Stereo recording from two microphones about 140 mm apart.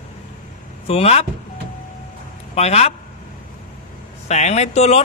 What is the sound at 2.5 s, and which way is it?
Speech, 50° left (ahead or behind).